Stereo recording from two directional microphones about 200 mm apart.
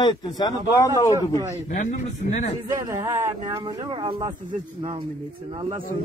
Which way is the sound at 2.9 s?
15° right (ahead or behind).